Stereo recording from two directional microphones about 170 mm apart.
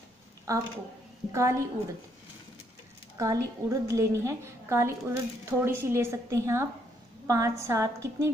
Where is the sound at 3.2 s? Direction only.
20° right (ahead or behind).